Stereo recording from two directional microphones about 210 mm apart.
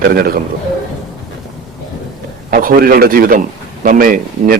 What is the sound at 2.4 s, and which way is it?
Speech, 40° right (ahead or behind).